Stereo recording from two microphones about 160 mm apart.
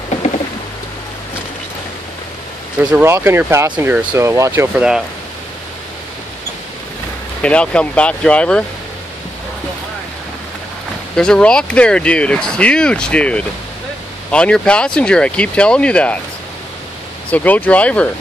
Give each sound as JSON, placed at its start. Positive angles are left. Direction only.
{"t": 2.9, "sound": "speech", "side_deg": -15}
{"t": 4.0, "sound": "speech", "side_deg": -25}
{"t": 4.3, "sound": "speech", "side_deg": -15}
{"t": 7.4, "sound": "speech", "side_deg": 5}
{"t": 11.1, "sound": "speech", "side_deg": 5}
{"t": 17.3, "sound": "speech", "side_deg": 10}